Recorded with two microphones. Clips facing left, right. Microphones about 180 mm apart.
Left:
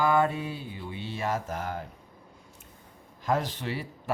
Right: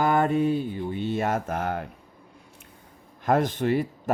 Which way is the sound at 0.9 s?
50° right (ahead or behind).